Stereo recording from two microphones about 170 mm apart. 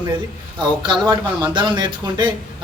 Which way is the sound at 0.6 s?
25° right (ahead or behind).